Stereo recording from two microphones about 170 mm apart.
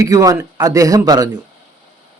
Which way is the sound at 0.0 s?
20° right (ahead or behind).